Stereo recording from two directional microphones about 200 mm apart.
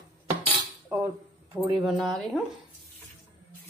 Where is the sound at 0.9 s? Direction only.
15° right (ahead or behind).